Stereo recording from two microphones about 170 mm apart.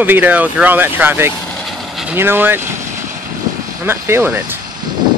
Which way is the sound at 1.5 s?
Centre (ahead or behind).